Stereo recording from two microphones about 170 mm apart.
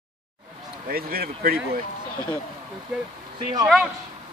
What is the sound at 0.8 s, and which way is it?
Speech, 60° right (ahead or behind).